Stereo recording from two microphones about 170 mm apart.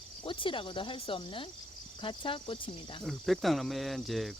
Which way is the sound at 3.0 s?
Centre (ahead or behind).